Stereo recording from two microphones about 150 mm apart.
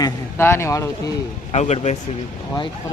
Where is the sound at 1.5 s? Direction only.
50° left (ahead or behind).